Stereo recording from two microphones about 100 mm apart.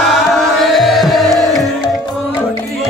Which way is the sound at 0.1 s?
Centre (ahead or behind).